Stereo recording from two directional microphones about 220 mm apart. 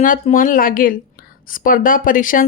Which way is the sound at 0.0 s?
35° left (ahead or behind).